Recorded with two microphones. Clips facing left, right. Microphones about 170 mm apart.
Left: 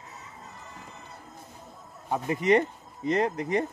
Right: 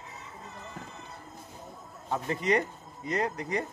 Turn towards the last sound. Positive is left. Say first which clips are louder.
# left 5 dB
turn(degrees=25)  # may be behind; listen again after turning